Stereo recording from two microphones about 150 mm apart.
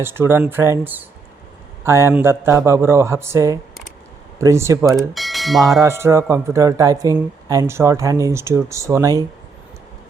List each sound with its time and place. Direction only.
0.0 s speech: 15° right (ahead or behind)
4.9 s speech: centre (ahead or behind)
5.8 s speech: 15° right (ahead or behind)